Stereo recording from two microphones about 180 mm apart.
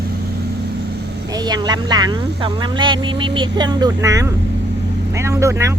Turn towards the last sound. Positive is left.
turn(degrees=-15)  # may be behind; listen again after turning